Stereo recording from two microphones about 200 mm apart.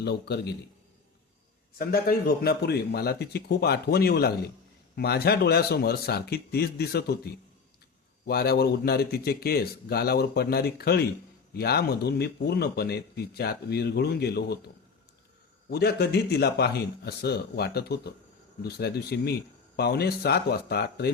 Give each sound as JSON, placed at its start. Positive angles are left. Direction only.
{"t": 0.0, "sound": "a man's voice", "side_deg": 55}
{"t": 1.8, "sound": "speech", "side_deg": 45}
{"t": 8.3, "sound": "speech", "side_deg": 50}
{"t": 15.7, "sound": "speech", "side_deg": 55}